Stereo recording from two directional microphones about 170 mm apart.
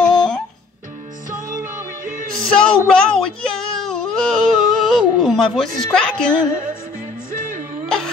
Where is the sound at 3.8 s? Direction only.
5° left (ahead or behind).